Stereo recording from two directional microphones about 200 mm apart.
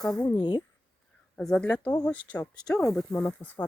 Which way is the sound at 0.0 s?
5° left (ahead or behind).